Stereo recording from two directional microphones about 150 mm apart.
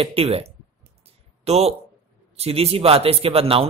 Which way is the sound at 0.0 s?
40° right (ahead or behind).